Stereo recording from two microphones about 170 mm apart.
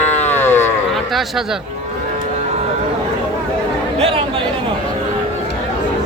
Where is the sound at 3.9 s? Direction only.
35° right (ahead or behind).